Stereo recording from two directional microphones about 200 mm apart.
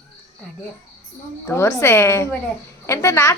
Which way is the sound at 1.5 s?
15° left (ahead or behind).